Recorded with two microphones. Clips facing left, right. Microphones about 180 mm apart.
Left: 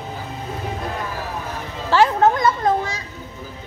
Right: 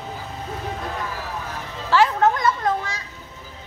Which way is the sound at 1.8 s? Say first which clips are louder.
Left 2 dB; 30° left (ahead or behind).